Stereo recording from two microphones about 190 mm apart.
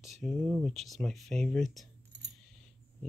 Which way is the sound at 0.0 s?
Centre (ahead or behind).